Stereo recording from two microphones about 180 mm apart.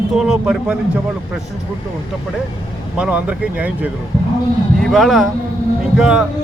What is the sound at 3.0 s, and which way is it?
A man's voice, 5° right (ahead or behind).